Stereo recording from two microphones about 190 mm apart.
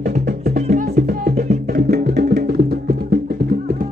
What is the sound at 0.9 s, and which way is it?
Music, 55° right (ahead or behind).